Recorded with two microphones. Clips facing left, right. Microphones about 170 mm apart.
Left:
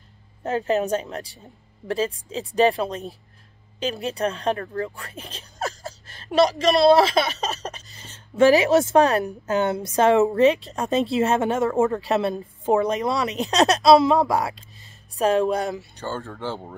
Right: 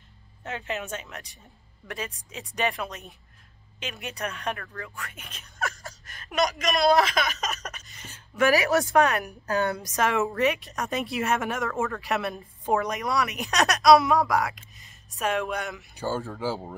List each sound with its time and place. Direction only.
0.4 s a woman's voice: 40° left (ahead or behind)
16.0 s speech: 5° right (ahead or behind)